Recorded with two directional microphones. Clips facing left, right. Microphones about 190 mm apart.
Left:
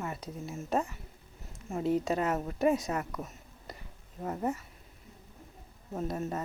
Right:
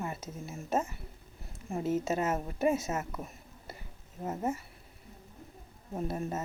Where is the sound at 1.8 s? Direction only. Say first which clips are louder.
Left 2 dB; 5° right (ahead or behind).